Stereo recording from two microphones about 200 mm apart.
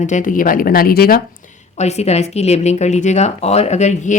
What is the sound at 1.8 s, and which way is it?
Speech, 35° left (ahead or behind).